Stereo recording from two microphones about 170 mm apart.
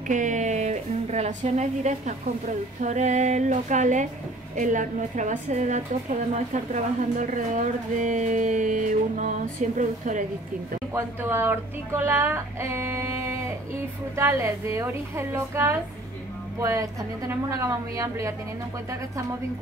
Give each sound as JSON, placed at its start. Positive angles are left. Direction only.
{"t": 0.1, "sound": "a woman's voice", "side_deg": -45}
{"t": 10.9, "sound": "speech", "side_deg": -15}